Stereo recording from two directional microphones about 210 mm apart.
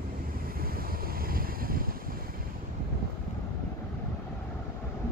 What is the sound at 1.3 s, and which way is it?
Wind, 45° right (ahead or behind).